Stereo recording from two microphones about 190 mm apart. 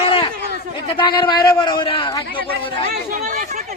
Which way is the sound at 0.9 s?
25° left (ahead or behind).